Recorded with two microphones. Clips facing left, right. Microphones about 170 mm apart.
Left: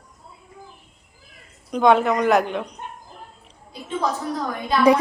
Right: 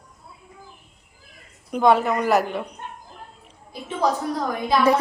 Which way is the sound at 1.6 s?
5° right (ahead or behind).